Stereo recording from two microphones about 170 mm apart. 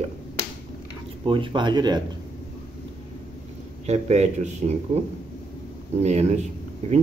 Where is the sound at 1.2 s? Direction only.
30° right (ahead or behind).